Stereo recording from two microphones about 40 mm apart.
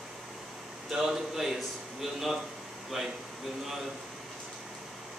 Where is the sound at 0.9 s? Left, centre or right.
Centre.